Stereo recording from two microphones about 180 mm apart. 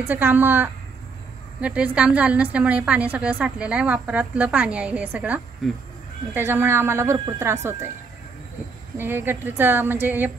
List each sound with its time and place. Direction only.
0.0 s a woman's voice: 10° right (ahead or behind)
6.3 s a woman's voice: 15° right (ahead or behind)
8.9 s a woman's voice: 10° right (ahead or behind)